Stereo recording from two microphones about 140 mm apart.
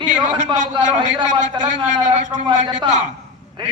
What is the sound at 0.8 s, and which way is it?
A man's voice, 60° right (ahead or behind).